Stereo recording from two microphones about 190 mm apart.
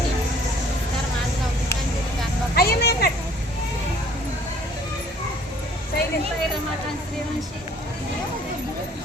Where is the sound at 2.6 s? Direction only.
55° left (ahead or behind).